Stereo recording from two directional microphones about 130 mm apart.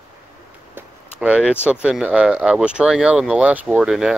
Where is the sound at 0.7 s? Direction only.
10° right (ahead or behind).